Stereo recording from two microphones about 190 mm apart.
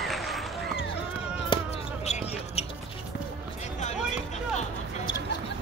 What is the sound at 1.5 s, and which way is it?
Basketball bounce, 25° left (ahead or behind).